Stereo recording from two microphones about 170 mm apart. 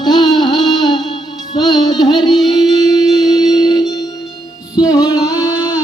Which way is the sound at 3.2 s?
20° left (ahead or behind).